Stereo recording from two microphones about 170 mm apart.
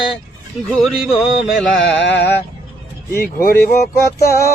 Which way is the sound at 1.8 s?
90° left.